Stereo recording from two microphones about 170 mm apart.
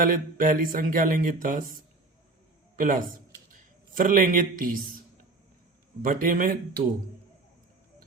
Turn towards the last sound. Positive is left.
turn(degrees=-55)  # may be behind; listen again after turning